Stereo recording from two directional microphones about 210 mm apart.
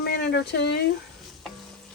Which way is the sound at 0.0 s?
50° left (ahead or behind).